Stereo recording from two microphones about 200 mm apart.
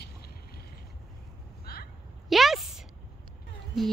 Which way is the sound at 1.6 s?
50° left (ahead or behind).